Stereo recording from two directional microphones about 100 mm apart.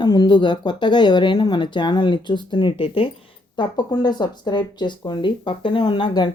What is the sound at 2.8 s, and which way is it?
Speech, 65° left (ahead or behind).